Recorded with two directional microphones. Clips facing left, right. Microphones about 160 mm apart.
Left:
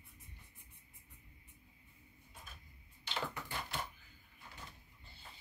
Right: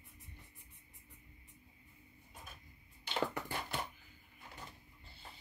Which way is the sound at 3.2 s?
45° right (ahead or behind).